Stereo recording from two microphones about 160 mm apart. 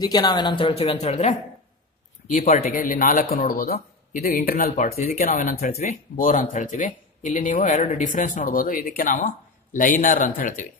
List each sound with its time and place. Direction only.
0.0 s speech: 25° left (ahead or behind); by 1.3 s 40° left (ahead or behind)
2.7 s speech: 60° left (ahead or behind)